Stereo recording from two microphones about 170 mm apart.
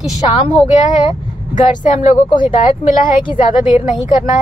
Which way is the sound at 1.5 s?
45° left (ahead or behind).